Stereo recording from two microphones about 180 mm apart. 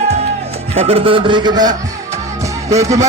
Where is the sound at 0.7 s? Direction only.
35° right (ahead or behind).